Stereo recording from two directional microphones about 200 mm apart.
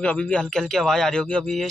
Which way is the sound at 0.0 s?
5° left (ahead or behind).